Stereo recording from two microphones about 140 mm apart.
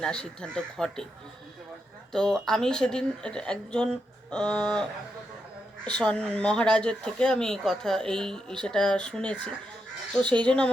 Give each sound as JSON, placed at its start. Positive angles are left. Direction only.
{"t": 0.0, "sound": "speech", "side_deg": 5}
{"t": 2.1, "sound": "speech", "side_deg": 5}